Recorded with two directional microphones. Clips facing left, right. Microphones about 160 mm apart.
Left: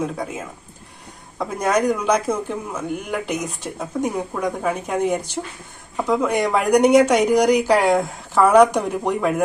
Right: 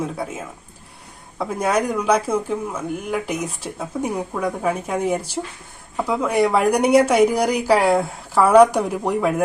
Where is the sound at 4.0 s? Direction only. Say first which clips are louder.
Left 1 dB; 5° right (ahead or behind).